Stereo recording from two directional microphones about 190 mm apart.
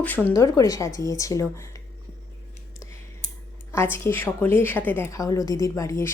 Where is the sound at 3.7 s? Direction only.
15° left (ahead or behind).